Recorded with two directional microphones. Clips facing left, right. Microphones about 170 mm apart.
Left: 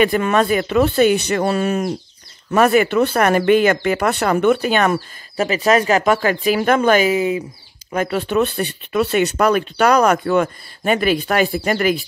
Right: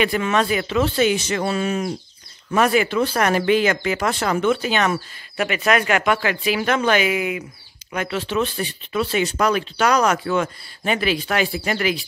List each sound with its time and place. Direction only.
0.0 s speech: 50° left (ahead or behind)
1.3 s speech: 45° left (ahead or behind)
5.4 s speech: 35° left (ahead or behind)
7.9 s speech: 45° left (ahead or behind)